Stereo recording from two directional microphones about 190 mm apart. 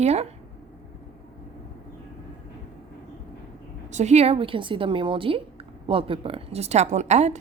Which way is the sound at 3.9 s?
35° right (ahead or behind).